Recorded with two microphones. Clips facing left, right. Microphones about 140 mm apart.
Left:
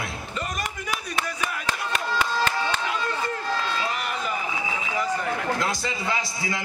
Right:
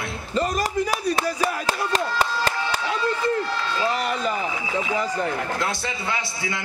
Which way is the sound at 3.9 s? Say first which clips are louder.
Right 5 dB; 35° right (ahead or behind).